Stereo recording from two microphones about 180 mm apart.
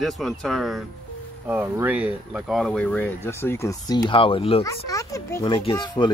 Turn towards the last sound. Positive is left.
turn(degrees=25)  # may be behind; listen again after turning